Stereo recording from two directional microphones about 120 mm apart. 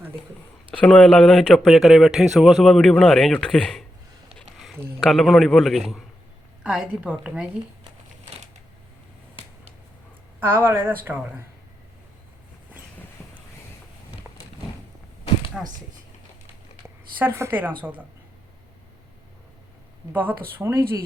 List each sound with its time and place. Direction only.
0.7 s speech: 10° left (ahead or behind)
4.9 s a woman's voice: 5° left (ahead or behind)
10.4 s a woman's voice: 20° right (ahead or behind)
14.3 s a sound: 10° right (ahead or behind)
15.6 s speech: 5° right (ahead or behind)
17.2 s a woman's voice: 20° right (ahead or behind)
20.1 s speech: 15° right (ahead or behind)